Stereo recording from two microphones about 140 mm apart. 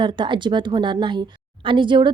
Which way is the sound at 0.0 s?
35° right (ahead or behind).